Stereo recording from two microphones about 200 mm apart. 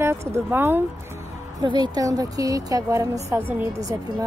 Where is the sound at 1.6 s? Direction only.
20° right (ahead or behind).